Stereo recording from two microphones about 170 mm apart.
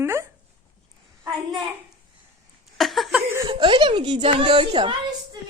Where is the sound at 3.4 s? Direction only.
30° right (ahead or behind).